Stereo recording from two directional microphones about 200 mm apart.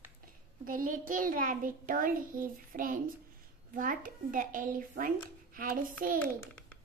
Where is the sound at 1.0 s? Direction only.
40° right (ahead or behind).